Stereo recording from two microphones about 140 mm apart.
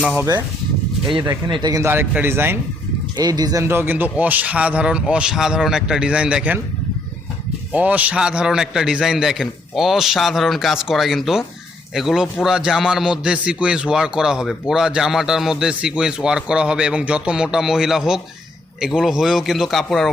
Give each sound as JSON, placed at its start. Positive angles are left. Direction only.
{"t": 0.2, "sound": "speech", "side_deg": -15}
{"t": 1.5, "sound": "speech", "side_deg": -30}
{"t": 3.2, "sound": "speech", "side_deg": -30}
{"t": 7.7, "sound": "a man's voice", "side_deg": -10}